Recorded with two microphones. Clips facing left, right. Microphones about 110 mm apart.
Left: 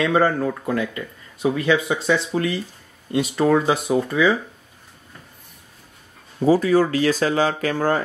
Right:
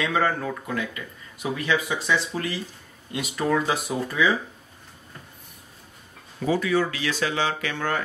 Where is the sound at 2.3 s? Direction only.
5° left (ahead or behind).